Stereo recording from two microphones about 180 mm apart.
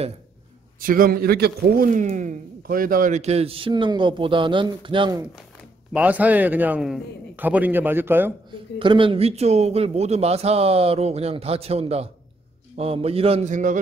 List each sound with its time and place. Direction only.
0.7 s speech: 50° right (ahead or behind)
1.9 s a man's voice: 45° right (ahead or behind); by 5.2 s 25° right (ahead or behind)
5.9 s a man's voice: 10° right (ahead or behind)
8.7 s a man's voice: 30° right (ahead or behind); by 13.7 s 45° right (ahead or behind)